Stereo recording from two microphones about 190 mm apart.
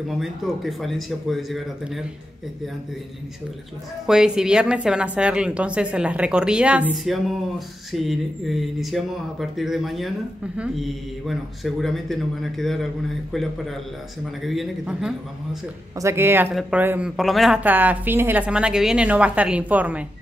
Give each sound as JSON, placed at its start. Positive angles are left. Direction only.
{"t": 0.2, "sound": "a woman's voice", "side_deg": 0}
{"t": 4.0, "sound": "a woman's voice", "side_deg": -5}
{"t": 16.0, "sound": "speech", "side_deg": -15}